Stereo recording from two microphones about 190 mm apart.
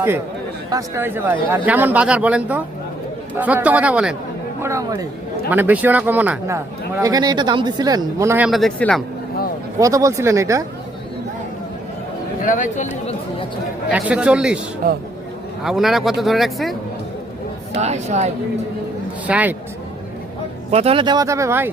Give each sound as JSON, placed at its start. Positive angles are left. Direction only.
{"t": 0.7, "sound": "speech", "side_deg": -15}
{"t": 4.6, "sound": "speech", "side_deg": -15}
{"t": 7.0, "sound": "speech", "side_deg": -20}
{"t": 8.4, "sound": "speech", "side_deg": 0}
{"t": 9.7, "sound": "speech", "side_deg": -15}
{"t": 12.4, "sound": "speech", "side_deg": 45}
{"t": 13.9, "sound": "speech", "side_deg": -5}
{"t": 14.8, "sound": "speech", "side_deg": -50}
{"t": 15.6, "sound": "speech", "side_deg": 0}
{"t": 17.7, "sound": "a woman's voice", "side_deg": -35}
{"t": 19.3, "sound": "speech", "side_deg": -10}
{"t": 20.7, "sound": "speech", "side_deg": -30}